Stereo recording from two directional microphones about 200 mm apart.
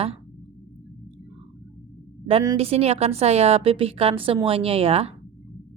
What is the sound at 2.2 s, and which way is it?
A woman's voice, 25° right (ahead or behind).